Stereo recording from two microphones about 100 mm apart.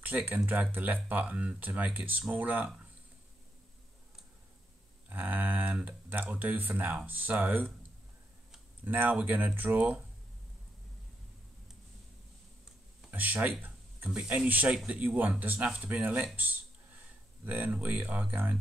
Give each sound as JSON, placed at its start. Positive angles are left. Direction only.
{"t": 0.0, "sound": "speech", "side_deg": -20}
{"t": 5.1, "sound": "speech", "side_deg": -15}
{"t": 8.8, "sound": "speech", "side_deg": -20}
{"t": 13.1, "sound": "a sound", "side_deg": -15}
{"t": 14.0, "sound": "speech", "side_deg": -10}
{"t": 17.5, "sound": "speech", "side_deg": -15}